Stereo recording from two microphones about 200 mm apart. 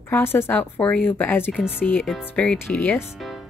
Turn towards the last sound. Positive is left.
turn(degrees=5)  # may be behind; listen again after turning